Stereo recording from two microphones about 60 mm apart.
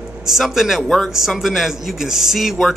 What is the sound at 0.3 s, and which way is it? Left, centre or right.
Speech, centre.